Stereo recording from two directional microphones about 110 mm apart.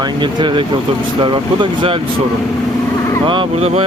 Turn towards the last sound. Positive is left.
turn(degrees=-70)  # may be behind; listen again after turning